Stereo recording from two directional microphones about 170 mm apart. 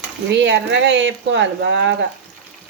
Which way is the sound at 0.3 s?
90° right.